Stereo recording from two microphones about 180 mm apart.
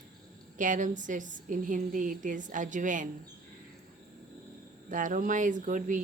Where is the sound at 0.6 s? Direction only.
45° right (ahead or behind).